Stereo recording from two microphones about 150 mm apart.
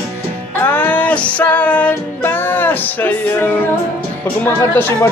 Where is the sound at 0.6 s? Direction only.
10° left (ahead or behind).